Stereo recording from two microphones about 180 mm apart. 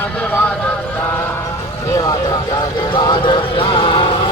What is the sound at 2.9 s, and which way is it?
Music, 25° left (ahead or behind).